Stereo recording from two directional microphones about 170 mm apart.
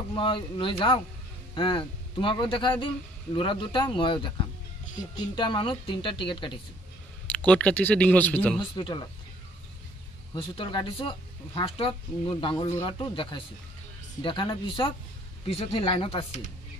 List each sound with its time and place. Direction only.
0.1 s speech: 30° left (ahead or behind)
7.2 s speech: 10° left (ahead or behind)
8.7 s speech: 25° left (ahead or behind)
10.3 s speech: 30° left (ahead or behind)